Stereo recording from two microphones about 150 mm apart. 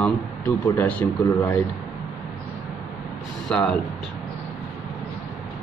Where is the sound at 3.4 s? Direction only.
5° left (ahead or behind).